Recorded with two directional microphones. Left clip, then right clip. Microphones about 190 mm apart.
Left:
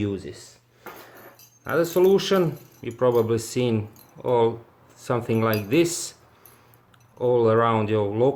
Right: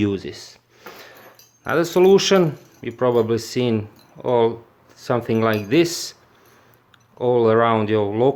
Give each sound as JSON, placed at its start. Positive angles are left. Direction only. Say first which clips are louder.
{"t": 0.0, "sound": "speech", "louder": "right 6 dB", "side_deg": -40}
{"t": 1.6, "sound": "speech", "louder": "right 4 dB", "side_deg": -30}
{"t": 7.2, "sound": "speech", "louder": "right 3 dB", "side_deg": -25}